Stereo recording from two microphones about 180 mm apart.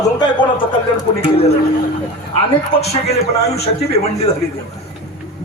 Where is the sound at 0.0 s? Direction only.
25° left (ahead or behind).